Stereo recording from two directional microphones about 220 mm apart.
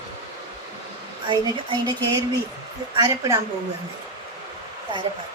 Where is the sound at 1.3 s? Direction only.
20° right (ahead or behind).